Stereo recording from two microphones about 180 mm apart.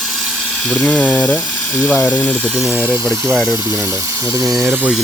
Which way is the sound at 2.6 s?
10° right (ahead or behind).